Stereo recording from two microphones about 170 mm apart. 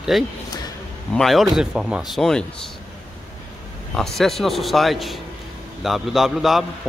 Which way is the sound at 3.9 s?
Centre (ahead or behind).